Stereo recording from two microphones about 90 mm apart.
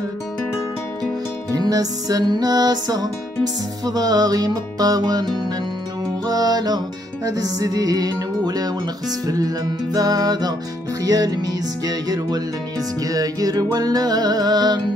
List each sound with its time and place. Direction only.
1.5 s music: 40° right (ahead or behind)